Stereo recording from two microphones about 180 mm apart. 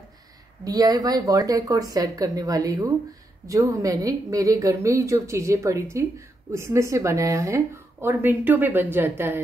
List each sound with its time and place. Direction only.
0.7 s a woman's voice: 20° right (ahead or behind)